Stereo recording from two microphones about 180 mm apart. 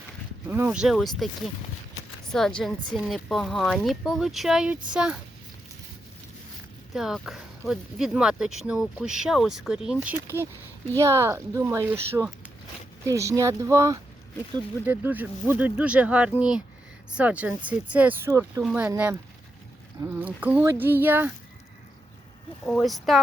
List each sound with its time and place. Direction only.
0.4 s speech: 10° right (ahead or behind)
6.9 s speech: centre (ahead or behind); by 18.6 s 15° right (ahead or behind)
18.6 s speech: 5° right (ahead or behind)
22.6 s speech: centre (ahead or behind)